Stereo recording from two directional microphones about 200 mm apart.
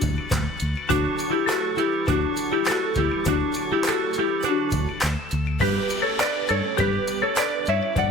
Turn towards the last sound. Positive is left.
turn(degrees=0)  # may be behind; listen again after turning